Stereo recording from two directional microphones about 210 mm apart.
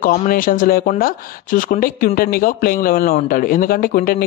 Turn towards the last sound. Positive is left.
turn(degrees=45)  # may be behind; listen again after turning